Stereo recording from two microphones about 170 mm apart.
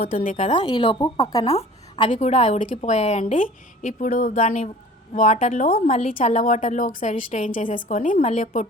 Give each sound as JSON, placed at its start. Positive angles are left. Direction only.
{"t": 0.0, "sound": "a woman's voice", "side_deg": 55}
{"t": 0.6, "sound": "speech", "side_deg": 25}
{"t": 1.5, "sound": "a woman's voice", "side_deg": 40}